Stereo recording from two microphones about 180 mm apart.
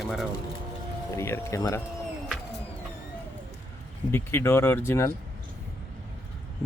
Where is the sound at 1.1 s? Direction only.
15° left (ahead or behind).